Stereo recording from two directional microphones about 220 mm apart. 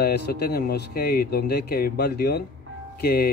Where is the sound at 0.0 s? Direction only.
45° left (ahead or behind).